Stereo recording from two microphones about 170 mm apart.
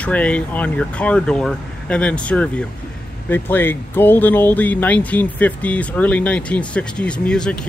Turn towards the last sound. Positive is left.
turn(degrees=5)  # may be behind; listen again after turning